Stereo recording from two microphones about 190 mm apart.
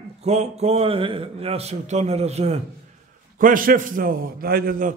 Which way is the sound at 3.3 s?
45° right (ahead or behind).